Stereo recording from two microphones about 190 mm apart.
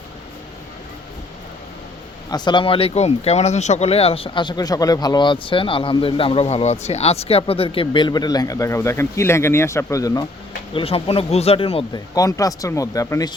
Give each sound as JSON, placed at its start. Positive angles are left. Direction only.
{"t": 2.3, "sound": "speech", "side_deg": 25}
{"t": 10.8, "sound": "speech", "side_deg": 30}
{"t": 12.1, "sound": "speech", "side_deg": 20}